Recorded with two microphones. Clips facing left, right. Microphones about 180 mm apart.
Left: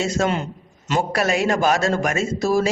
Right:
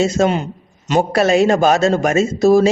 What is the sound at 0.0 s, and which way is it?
A man's voice, 20° right (ahead or behind).